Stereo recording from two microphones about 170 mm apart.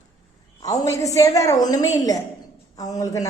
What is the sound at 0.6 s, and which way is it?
A woman's voice, 20° left (ahead or behind).